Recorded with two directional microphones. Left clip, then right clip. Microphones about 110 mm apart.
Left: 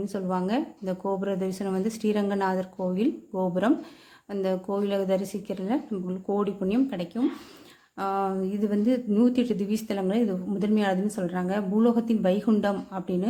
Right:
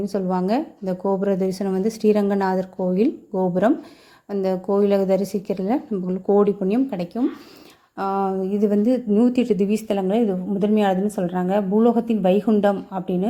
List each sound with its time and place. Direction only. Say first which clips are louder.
0.0 s a woman's voice: right 6 dB; 40° right (ahead or behind); by 13.2 s 20° right (ahead or behind)